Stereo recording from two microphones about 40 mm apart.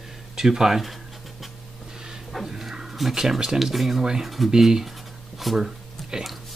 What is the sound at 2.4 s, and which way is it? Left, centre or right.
Dog, centre.